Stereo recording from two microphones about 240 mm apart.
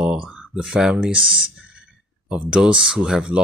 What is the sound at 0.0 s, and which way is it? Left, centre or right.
Speech, centre.